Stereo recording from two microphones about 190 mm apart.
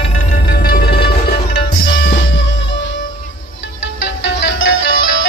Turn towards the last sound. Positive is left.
turn(degrees=75)  # may be behind; listen again after turning